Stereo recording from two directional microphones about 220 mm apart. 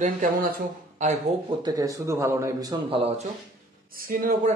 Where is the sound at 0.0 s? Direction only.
40° right (ahead or behind).